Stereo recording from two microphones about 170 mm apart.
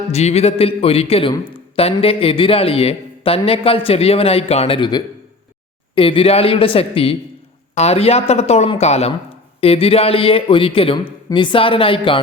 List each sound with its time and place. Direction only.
0.1 s a man's voice: 40° left (ahead or behind)